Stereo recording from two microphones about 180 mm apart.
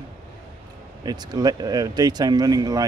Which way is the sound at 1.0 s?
25° right (ahead or behind).